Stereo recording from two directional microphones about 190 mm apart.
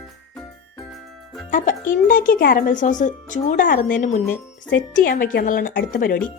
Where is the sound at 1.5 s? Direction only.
45° left (ahead or behind).